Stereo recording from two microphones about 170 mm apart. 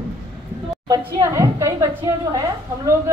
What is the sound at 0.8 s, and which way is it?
A woman's voice, 20° right (ahead or behind).